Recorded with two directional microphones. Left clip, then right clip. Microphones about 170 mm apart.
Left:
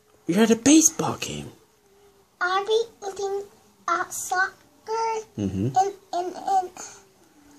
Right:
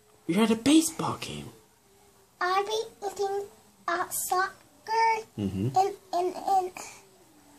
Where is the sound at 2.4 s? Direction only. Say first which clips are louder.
Left 5 dB; 5° left (ahead or behind).